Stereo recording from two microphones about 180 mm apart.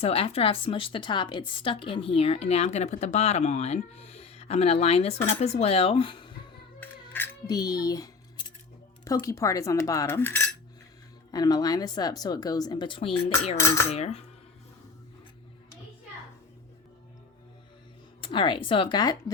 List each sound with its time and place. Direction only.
0.0 s speech: 35° left (ahead or behind)
6.7 s music: 10° left (ahead or behind)
7.5 s speech: 20° left (ahead or behind)
9.0 s cutlery: 20° left (ahead or behind)
11.3 s speech: 20° left (ahead or behind)
13.6 s cutlery: 15° left (ahead or behind)
13.9 s speech: 35° left (ahead or behind)
18.2 s speech: 25° left (ahead or behind)